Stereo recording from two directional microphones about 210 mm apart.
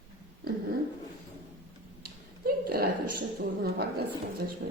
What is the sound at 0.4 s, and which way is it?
Dog, 45° right (ahead or behind).